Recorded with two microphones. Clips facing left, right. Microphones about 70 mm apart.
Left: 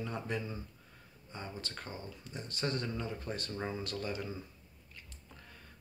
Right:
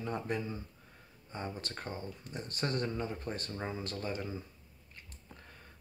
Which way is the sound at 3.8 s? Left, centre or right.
Right.